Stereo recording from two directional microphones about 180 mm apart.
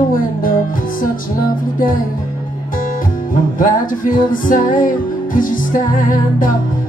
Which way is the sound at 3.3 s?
50° left (ahead or behind).